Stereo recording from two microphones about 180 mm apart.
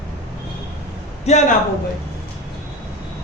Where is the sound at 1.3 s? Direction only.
40° left (ahead or behind).